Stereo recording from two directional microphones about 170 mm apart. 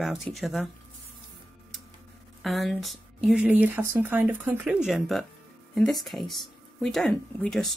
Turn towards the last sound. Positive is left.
turn(degrees=5)  # may be behind; listen again after turning